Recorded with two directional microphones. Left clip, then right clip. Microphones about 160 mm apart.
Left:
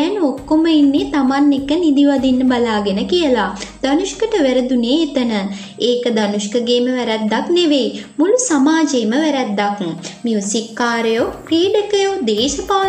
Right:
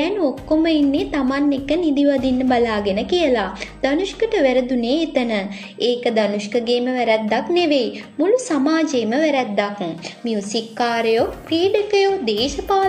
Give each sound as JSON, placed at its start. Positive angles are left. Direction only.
{"t": 0.0, "sound": "a woman's voice", "side_deg": -15}